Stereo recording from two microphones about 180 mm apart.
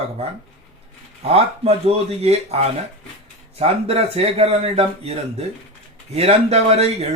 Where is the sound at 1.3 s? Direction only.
35° right (ahead or behind).